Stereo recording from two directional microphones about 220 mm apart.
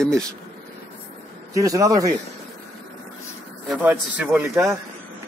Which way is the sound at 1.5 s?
15° right (ahead or behind).